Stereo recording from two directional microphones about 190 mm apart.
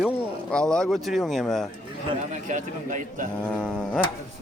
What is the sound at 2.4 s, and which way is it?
Speech, 40° right (ahead or behind).